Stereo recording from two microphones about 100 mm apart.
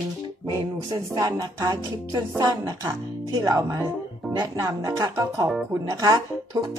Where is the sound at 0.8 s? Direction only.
45° right (ahead or behind).